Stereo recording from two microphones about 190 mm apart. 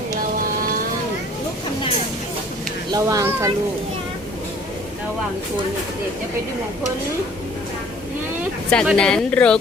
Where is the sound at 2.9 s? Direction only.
20° right (ahead or behind).